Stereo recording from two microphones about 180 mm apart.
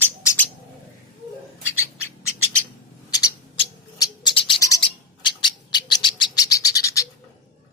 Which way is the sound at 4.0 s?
25° left (ahead or behind).